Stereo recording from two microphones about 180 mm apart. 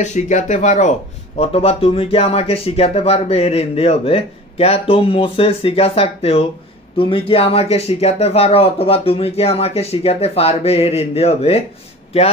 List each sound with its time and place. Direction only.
0.0 s speech: 40° left (ahead or behind)